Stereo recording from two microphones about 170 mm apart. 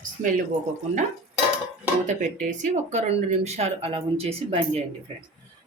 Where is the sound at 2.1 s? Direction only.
45° right (ahead or behind).